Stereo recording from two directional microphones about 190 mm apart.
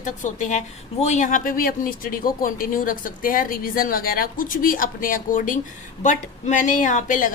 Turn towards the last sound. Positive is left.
turn(degrees=45)  # may be behind; listen again after turning